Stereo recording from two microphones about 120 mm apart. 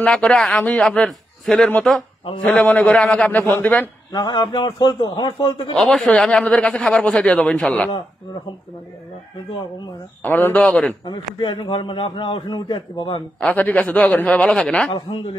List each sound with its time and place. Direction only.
0.0 s speech: 10° left (ahead or behind)
4.1 s a man's voice: 40° left (ahead or behind)
5.8 s speech: centre (ahead or behind)
10.2 s speech: 15° left (ahead or behind)
11.1 s a man's voice: 40° left (ahead or behind)
13.4 s speech: 15° left (ahead or behind)
14.9 s a man's voice: 45° left (ahead or behind)